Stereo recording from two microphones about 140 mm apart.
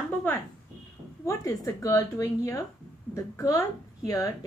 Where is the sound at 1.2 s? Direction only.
20° left (ahead or behind).